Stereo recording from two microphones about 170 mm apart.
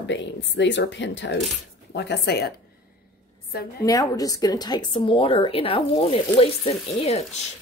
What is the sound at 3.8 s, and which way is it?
A woman's voice, 20° left (ahead or behind).